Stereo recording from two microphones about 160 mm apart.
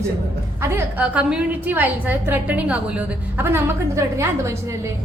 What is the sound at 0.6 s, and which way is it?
A woman's voice, 10° right (ahead or behind).